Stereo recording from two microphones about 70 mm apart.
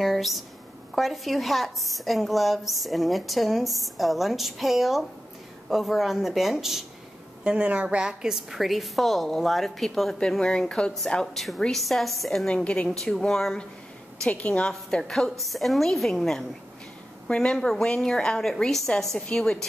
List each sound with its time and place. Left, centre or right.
0.0 s a woman's voice: centre
7.4 s a woman's voice: centre
12.4 s a woman's voice: centre